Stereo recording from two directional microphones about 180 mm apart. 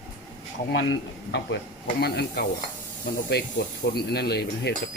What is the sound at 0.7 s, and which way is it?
Speech, 85° left.